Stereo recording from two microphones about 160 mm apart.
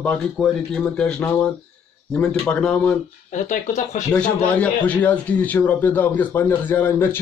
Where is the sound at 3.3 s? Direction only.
50° left (ahead or behind).